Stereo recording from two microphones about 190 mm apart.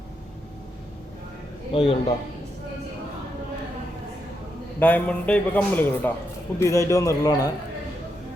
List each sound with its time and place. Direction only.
1.7 s a man's voice: 30° left (ahead or behind)
4.8 s a man's voice: 10° left (ahead or behind)